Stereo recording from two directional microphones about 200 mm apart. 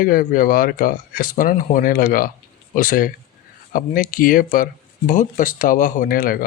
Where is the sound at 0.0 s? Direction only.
45° left (ahead or behind).